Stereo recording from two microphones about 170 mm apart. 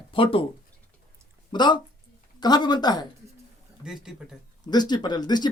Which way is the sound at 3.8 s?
5° right (ahead or behind).